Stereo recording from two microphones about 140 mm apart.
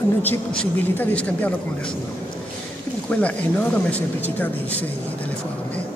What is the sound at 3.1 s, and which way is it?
Speech, 10° left (ahead or behind).